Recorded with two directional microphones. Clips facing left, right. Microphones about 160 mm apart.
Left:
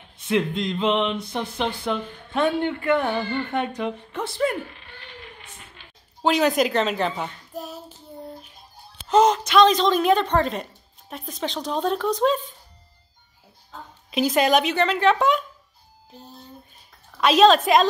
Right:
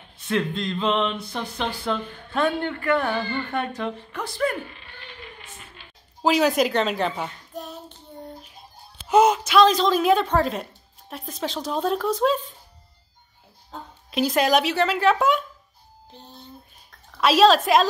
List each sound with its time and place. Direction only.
0.3 s a sound: 15° left (ahead or behind)
6.2 s child singing: centre (ahead or behind)
9.0 s a woman's voice: 10° right (ahead or behind)
14.1 s a woman's voice: centre (ahead or behind)
17.2 s a woman's voice: centre (ahead or behind)